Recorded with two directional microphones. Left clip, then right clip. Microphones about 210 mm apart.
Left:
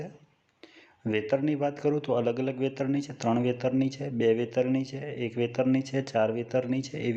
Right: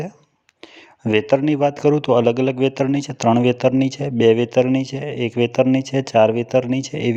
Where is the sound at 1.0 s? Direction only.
35° right (ahead or behind).